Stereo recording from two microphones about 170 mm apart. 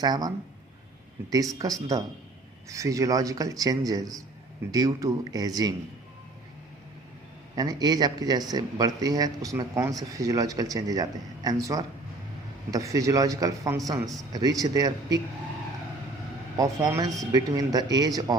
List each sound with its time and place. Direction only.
0.0 s speech: 25° right (ahead or behind)
7.5 s speech: 20° right (ahead or behind)
16.6 s speech: 15° right (ahead or behind)